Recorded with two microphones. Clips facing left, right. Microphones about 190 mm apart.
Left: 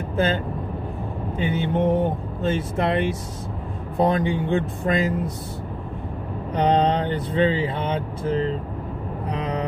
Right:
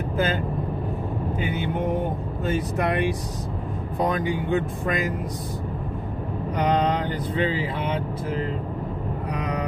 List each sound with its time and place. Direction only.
1.4 s speech: 25° left (ahead or behind)
6.5 s speech: 25° left (ahead or behind)
9.3 s vehicle: 25° left (ahead or behind)